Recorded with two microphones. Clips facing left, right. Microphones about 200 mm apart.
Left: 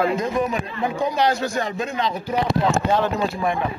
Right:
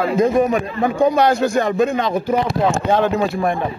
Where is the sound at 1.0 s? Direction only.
55° right (ahead or behind).